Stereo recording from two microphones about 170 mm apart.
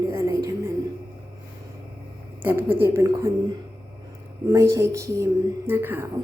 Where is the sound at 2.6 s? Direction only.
15° right (ahead or behind).